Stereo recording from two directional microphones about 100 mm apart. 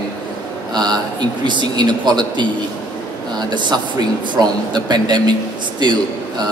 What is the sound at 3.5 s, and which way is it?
A man's voice, 50° right (ahead or behind).